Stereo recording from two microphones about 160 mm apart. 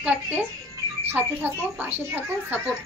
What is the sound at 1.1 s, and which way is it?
Speech, 10° right (ahead or behind).